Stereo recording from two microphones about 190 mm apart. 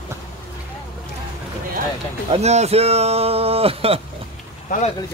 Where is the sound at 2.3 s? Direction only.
35° right (ahead or behind).